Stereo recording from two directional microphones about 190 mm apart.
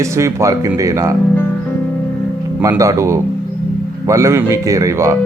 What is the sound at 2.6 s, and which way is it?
Speech, 15° right (ahead or behind).